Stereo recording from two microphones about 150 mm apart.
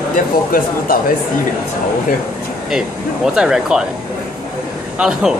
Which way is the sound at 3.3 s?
5° right (ahead or behind).